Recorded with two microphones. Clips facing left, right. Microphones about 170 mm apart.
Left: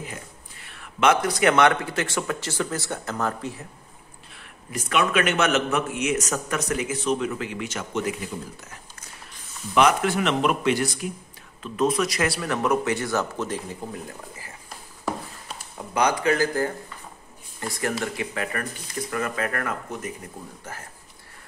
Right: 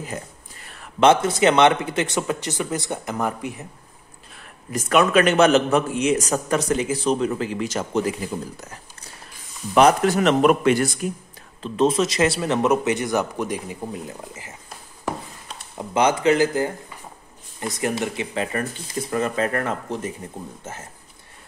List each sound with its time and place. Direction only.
0.0 s a man's voice: 40° right (ahead or behind); by 3.6 s 15° right (ahead or behind)
4.7 s a man's voice: 45° right (ahead or behind)
9.8 s a man's voice: 40° right (ahead or behind)
11.6 s a man's voice: 30° right (ahead or behind)
15.8 s a man's voice: 25° right (ahead or behind)
17.7 s a man's voice: 20° right (ahead or behind)